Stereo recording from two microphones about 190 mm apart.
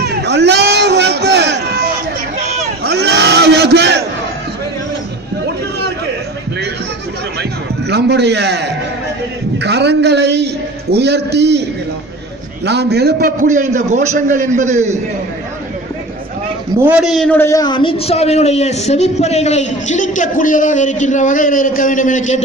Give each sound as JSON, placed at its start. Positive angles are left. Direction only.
{"t": 0.0, "sound": "a sound", "side_deg": -60}
{"t": 2.8, "sound": "battle cry", "side_deg": -60}
{"t": 7.9, "sound": "a man's voice", "side_deg": -60}
{"t": 12.6, "sound": "a man's voice", "side_deg": -60}
{"t": 16.8, "sound": "a man's voice", "side_deg": -5}
{"t": 17.4, "sound": "a man's voice", "side_deg": 20}